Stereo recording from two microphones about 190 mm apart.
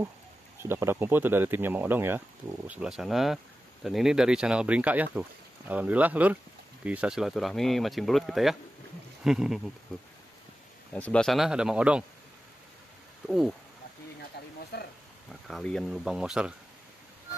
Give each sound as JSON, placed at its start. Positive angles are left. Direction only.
{"t": 0.6, "sound": "speech", "side_deg": -15}
{"t": 10.9, "sound": "speech", "side_deg": 5}
{"t": 13.3, "sound": "speech", "side_deg": 0}
{"t": 14.7, "sound": "speech", "side_deg": 60}
{"t": 15.4, "sound": "speech", "side_deg": 0}